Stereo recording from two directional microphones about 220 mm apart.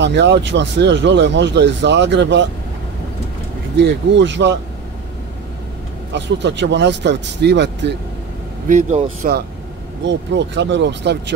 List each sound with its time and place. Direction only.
0.0 s speech: 50° right (ahead or behind)
3.7 s speech: 55° right (ahead or behind)
6.1 s speech: 55° right (ahead or behind)
8.6 s speech: 35° right (ahead or behind)
10.0 s speech: 55° right (ahead or behind)